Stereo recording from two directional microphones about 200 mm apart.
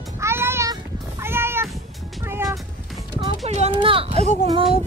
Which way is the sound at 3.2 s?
30° right (ahead or behind).